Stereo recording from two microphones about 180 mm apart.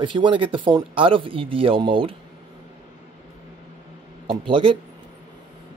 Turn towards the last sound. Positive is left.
turn(degrees=-30)  # may be behind; listen again after turning